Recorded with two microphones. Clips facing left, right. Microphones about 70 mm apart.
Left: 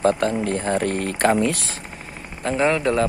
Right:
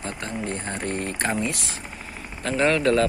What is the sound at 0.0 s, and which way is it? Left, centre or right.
Speech, left.